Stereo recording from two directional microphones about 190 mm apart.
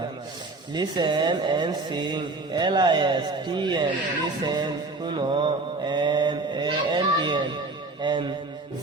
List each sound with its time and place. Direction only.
0.7 s speech: 25° right (ahead or behind)